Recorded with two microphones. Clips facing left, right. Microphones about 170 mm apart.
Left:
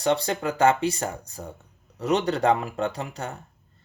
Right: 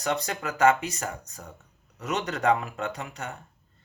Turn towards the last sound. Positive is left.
turn(degrees=35)  # may be behind; listen again after turning